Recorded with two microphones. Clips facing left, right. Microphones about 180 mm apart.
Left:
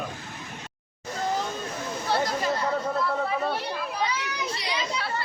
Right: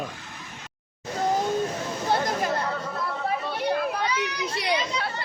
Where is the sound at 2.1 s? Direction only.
50° right (ahead or behind).